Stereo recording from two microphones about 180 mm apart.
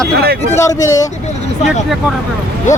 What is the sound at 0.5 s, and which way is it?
Speech, 15° left (ahead or behind).